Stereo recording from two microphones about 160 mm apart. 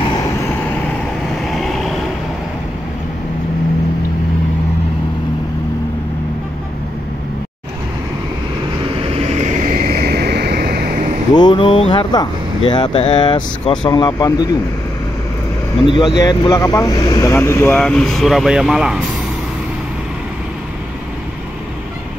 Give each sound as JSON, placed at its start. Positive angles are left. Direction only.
{"t": 0.0, "sound": "vehicle", "side_deg": 30}
{"t": 1.4, "sound": "vehicle", "side_deg": 0}
{"t": 9.1, "sound": "vehicle", "side_deg": -45}
{"t": 11.3, "sound": "speech", "side_deg": 30}
{"t": 15.9, "sound": "speech", "side_deg": 30}